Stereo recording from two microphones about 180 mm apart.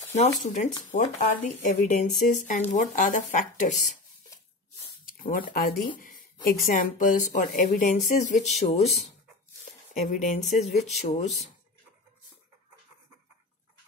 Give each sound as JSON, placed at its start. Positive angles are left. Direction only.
{"t": 0.1, "sound": "speech", "side_deg": 40}
{"t": 5.0, "sound": "a sound", "side_deg": 50}
{"t": 6.4, "sound": "speech", "side_deg": 50}
{"t": 9.9, "sound": "speech", "side_deg": 45}